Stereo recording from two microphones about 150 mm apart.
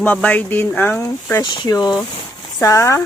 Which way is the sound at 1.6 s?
30° left (ahead or behind).